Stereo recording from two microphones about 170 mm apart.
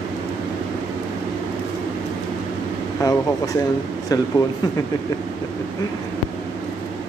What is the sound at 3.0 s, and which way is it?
Speech, 20° left (ahead or behind).